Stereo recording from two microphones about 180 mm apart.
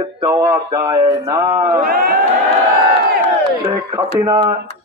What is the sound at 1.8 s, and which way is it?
Speech, 55° right (ahead or behind).